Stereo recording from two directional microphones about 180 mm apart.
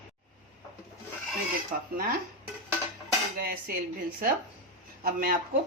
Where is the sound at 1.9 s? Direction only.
50° right (ahead or behind).